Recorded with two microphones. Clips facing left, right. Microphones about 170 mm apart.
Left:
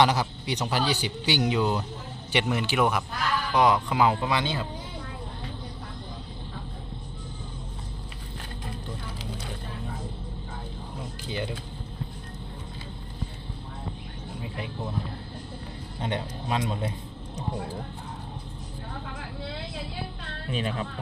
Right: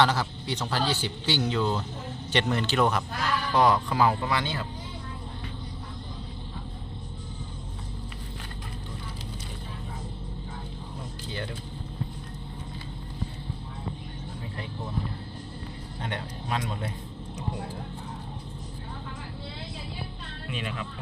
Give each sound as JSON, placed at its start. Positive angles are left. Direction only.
{"t": 0.0, "sound": "speech", "side_deg": 15}
{"t": 11.3, "sound": "speech", "side_deg": 15}
{"t": 16.0, "sound": "a man's voice", "side_deg": 20}
{"t": 20.5, "sound": "a woman's voice", "side_deg": 35}